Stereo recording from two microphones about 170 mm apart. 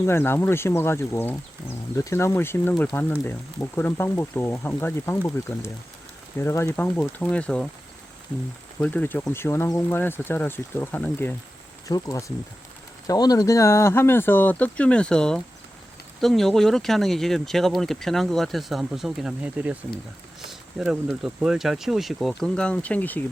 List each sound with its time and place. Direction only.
0.0 s speech: 15° left (ahead or behind)
8.8 s speech: 10° left (ahead or behind)